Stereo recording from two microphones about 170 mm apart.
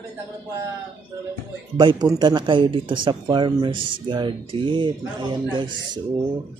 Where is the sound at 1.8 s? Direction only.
25° right (ahead or behind).